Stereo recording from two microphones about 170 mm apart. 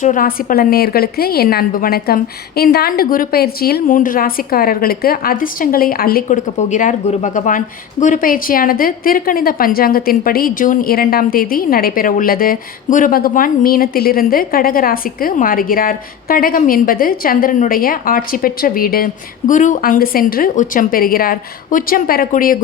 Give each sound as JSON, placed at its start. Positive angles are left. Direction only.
{"t": 0.0, "sound": "a woman's voice", "side_deg": 50}